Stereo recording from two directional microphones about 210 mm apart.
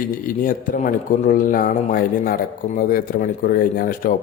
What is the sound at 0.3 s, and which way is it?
A man's voice, 40° left (ahead or behind).